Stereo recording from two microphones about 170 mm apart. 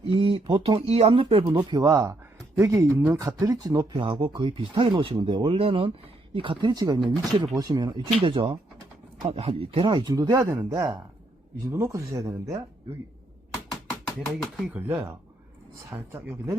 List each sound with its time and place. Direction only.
0.1 s speech: 30° right (ahead or behind)
14.3 s speech: centre (ahead or behind)
14.8 s speech: 15° right (ahead or behind)